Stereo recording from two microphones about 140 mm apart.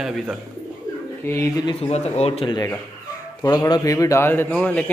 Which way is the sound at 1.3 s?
20° left (ahead or behind).